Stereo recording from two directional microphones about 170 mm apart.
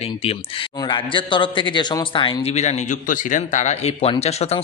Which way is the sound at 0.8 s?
30° left (ahead or behind).